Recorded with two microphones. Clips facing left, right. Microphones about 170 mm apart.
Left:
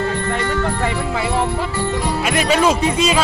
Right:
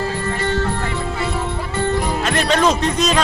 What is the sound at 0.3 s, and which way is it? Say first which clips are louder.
Music: left 1 dB; 65° left (ahead or behind).